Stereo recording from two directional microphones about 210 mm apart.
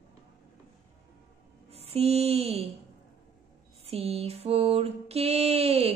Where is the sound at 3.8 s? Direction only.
30° right (ahead or behind).